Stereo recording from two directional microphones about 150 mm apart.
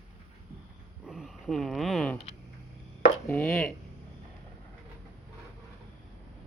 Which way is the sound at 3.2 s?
10° left (ahead or behind).